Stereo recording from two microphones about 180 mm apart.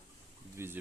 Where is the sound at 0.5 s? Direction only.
15° right (ahead or behind).